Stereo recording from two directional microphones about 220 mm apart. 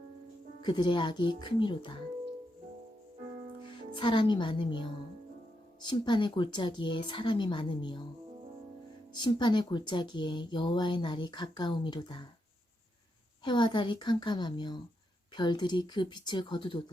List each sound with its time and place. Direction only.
0.6 s speech: 20° left (ahead or behind)
3.7 s speech: 20° left (ahead or behind)
9.1 s speech: 20° left (ahead or behind)
13.4 s speech: 20° left (ahead or behind)